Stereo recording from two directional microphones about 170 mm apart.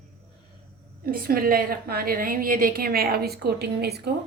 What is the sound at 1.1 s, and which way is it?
A woman's voice, 60° right (ahead or behind).